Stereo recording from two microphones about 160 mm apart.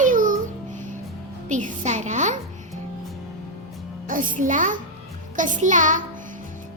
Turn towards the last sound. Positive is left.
turn(degrees=-50)  # may be behind; listen again after turning